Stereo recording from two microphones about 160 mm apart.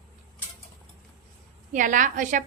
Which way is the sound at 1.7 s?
55° right (ahead or behind).